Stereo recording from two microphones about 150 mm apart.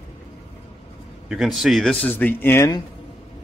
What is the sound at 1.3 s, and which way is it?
Speech, centre (ahead or behind).